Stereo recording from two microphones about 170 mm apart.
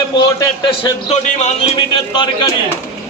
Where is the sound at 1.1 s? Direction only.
40° left (ahead or behind); by 2.5 s 25° left (ahead or behind).